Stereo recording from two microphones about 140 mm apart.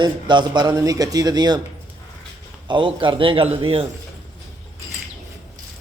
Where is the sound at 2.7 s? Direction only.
35° right (ahead or behind).